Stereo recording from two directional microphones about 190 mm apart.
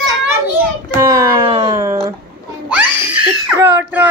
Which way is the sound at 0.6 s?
15° right (ahead or behind).